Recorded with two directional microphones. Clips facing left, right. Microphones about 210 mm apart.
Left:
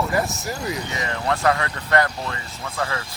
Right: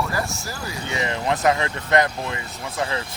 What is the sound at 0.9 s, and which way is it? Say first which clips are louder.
Speech: right 6 dB; 20° right (ahead or behind).